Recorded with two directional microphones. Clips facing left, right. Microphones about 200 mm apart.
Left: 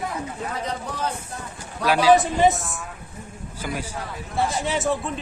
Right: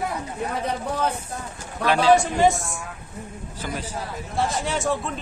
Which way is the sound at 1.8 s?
5° left (ahead or behind).